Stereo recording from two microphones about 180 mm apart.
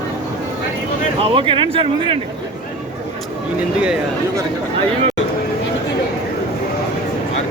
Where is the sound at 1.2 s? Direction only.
30° right (ahead or behind).